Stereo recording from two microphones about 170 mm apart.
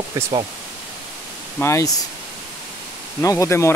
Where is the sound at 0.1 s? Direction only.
25° right (ahead or behind).